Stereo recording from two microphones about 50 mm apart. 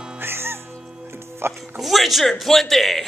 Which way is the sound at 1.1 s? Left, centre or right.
Right.